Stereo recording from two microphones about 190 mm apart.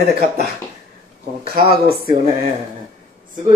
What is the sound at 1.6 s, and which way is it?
Speech, 55° right (ahead or behind).